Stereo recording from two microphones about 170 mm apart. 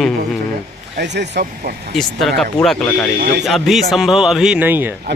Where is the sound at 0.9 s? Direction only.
90° right.